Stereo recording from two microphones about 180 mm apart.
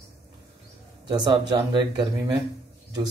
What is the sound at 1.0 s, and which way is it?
Speech, 25° right (ahead or behind).